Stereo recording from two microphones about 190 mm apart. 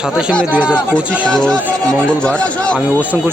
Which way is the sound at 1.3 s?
5° left (ahead or behind).